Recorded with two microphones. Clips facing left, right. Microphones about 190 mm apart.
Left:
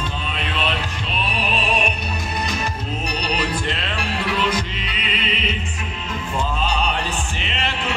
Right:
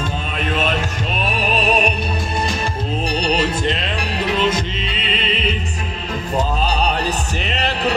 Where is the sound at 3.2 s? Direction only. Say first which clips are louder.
Right 5 dB; 25° right (ahead or behind).